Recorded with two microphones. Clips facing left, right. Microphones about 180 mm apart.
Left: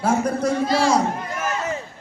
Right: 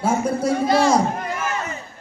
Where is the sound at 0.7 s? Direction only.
50° right (ahead or behind).